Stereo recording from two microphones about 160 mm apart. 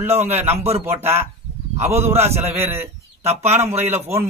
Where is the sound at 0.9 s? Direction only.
15° right (ahead or behind).